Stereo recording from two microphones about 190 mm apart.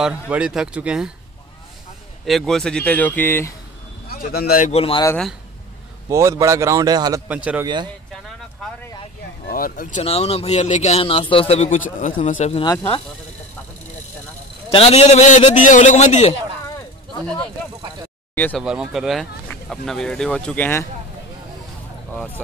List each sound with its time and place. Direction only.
0.3 s speech: 5° right (ahead or behind)
2.2 s speech: centre (ahead or behind)
4.1 s speech: 55° left (ahead or behind)
4.7 s speech: 30° left (ahead or behind)
6.0 s a man's voice: 15° right (ahead or behind)
7.2 s a man's voice: 5° right (ahead or behind)
7.6 s speech: 25° right (ahead or behind)
9.5 s speech: 50° left (ahead or behind)
14.7 s speech: 30° left (ahead or behind)
16.6 s a sound: 15° left (ahead or behind)
18.3 s speech: 10° left (ahead or behind)
18.6 s speech: 5° right (ahead or behind)
22.1 s speech: 5° left (ahead or behind)